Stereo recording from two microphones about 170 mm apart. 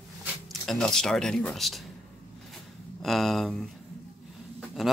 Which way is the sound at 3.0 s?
Centre (ahead or behind).